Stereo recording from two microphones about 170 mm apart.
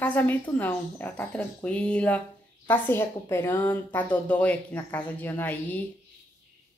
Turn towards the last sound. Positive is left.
turn(degrees=10)  # may be behind; listen again after turning